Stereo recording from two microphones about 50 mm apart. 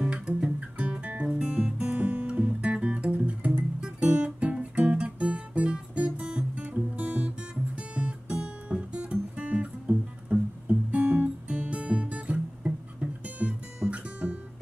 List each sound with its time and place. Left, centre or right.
0.3 s music: right